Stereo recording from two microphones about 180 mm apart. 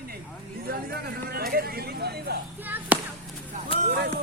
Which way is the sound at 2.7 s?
10° right (ahead or behind).